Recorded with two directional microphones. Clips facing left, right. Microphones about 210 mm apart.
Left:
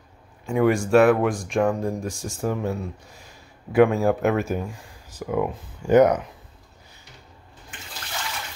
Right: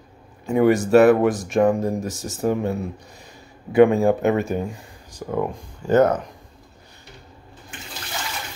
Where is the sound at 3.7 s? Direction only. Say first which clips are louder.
Right 3 dB; centre (ahead or behind).